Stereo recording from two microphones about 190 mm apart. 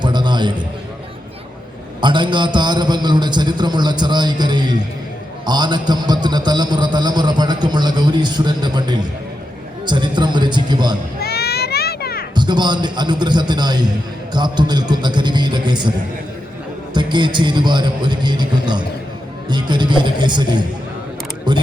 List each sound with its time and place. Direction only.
0.0 s a sound: 25° right (ahead or behind)
2.0 s a man's voice: 25° right (ahead or behind)
11.2 s children playing: 55° left (ahead or behind)
12.3 s a man's voice: 25° right (ahead or behind)
16.9 s a man's voice: 25° right (ahead or behind)